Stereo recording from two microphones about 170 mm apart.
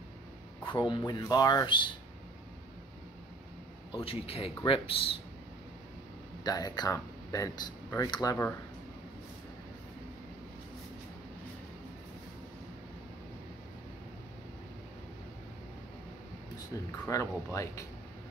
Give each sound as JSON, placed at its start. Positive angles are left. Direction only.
{"t": 0.7, "sound": "speech", "side_deg": 25}
{"t": 3.9, "sound": "speech", "side_deg": 35}
{"t": 6.4, "sound": "speech", "side_deg": 25}
{"t": 17.0, "sound": "speech", "side_deg": 15}